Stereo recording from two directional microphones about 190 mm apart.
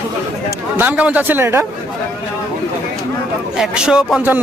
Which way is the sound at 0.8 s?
10° right (ahead or behind).